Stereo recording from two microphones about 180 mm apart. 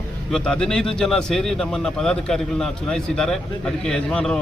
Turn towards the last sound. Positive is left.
turn(degrees=5)  # may be behind; listen again after turning